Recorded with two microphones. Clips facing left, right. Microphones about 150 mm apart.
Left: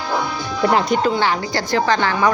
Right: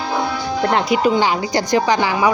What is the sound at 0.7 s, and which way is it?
Speech, centre (ahead or behind).